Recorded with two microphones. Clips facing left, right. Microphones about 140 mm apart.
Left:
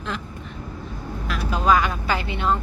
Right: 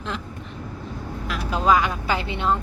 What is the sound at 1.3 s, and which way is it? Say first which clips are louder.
Speech: even; 15° right (ahead or behind).